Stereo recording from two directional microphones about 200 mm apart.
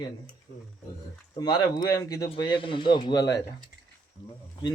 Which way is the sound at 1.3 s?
20° left (ahead or behind).